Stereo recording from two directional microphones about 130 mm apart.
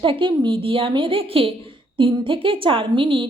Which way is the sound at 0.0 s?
40° right (ahead or behind).